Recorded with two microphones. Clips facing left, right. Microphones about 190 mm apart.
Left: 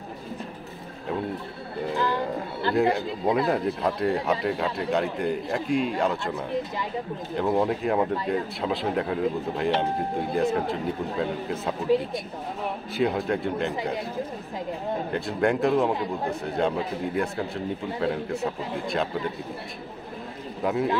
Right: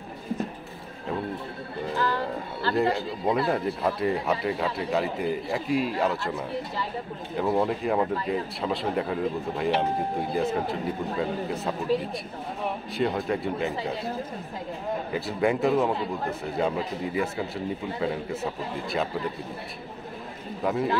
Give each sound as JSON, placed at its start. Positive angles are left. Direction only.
{"t": 2.0, "sound": "music", "side_deg": 15}
{"t": 2.7, "sound": "speech", "side_deg": 0}
{"t": 15.1, "sound": "speech", "side_deg": 0}
{"t": 20.6, "sound": "speech", "side_deg": 0}